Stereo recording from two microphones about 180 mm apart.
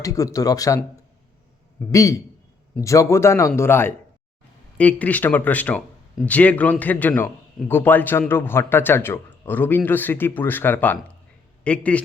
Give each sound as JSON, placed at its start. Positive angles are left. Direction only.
{"t": 0.0, "sound": "a man's voice", "side_deg": 20}
{"t": 1.9, "sound": "a man's voice", "side_deg": 20}